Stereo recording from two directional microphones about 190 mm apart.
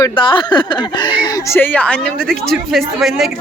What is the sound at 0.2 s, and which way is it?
A woman's voice, 25° left (ahead or behind).